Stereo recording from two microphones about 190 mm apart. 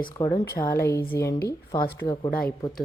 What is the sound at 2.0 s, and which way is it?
Speech, 25° left (ahead or behind).